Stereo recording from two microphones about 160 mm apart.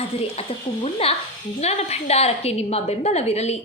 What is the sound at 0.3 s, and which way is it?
A woman's voice, 40° left (ahead or behind).